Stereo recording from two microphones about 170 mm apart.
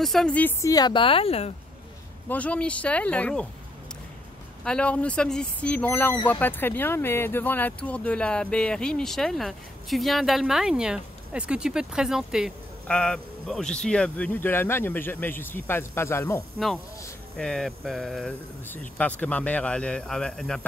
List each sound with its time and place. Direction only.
0.0 s a woman's voice: centre (ahead or behind); by 1.5 s 35° left (ahead or behind)
2.2 s speech: 10° left (ahead or behind)
4.6 s speech: 5° left (ahead or behind)
16.5 s speech: centre (ahead or behind)